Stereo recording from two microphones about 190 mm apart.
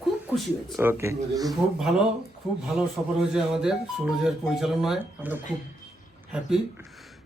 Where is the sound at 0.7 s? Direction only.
10° right (ahead or behind).